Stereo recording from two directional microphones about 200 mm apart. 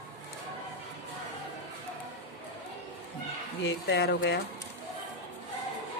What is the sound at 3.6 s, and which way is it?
Speech, 55° left (ahead or behind).